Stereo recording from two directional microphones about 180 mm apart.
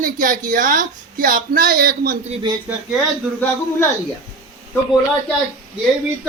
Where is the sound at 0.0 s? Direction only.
50° right (ahead or behind).